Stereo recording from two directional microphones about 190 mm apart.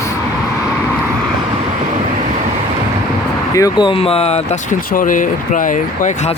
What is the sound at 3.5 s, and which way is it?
Speech, 20° left (ahead or behind).